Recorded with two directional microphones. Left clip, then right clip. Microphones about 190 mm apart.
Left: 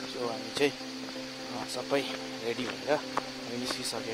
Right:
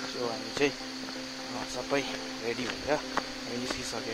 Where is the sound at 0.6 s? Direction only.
20° left (ahead or behind).